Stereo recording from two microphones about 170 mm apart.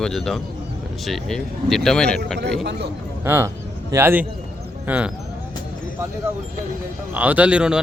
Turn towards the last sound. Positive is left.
turn(degrees=-5)  # may be behind; listen again after turning